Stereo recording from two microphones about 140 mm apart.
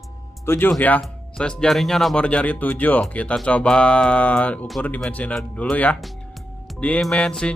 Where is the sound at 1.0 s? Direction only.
5° left (ahead or behind).